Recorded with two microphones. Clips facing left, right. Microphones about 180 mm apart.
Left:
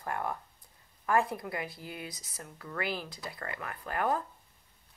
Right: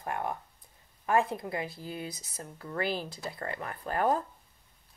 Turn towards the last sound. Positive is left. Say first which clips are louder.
# right 3 dB
turn(degrees=-30)  # may be behind; listen again after turning